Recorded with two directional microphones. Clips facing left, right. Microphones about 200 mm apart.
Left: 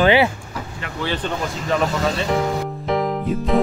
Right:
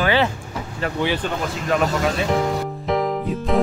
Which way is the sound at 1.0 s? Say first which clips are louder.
Even; 10° right (ahead or behind).